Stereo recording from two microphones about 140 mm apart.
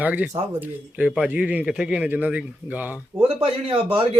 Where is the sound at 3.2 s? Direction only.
45° right (ahead or behind).